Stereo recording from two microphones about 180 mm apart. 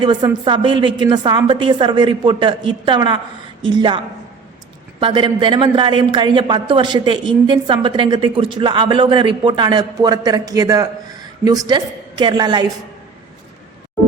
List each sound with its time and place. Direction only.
0.0 s a man's voice: 25° right (ahead or behind)